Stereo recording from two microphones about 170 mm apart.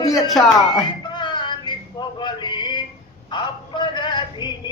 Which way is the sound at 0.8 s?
25° left (ahead or behind).